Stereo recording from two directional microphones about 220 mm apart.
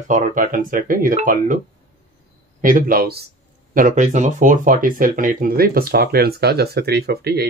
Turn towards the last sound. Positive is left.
turn(degrees=-45)  # may be behind; listen again after turning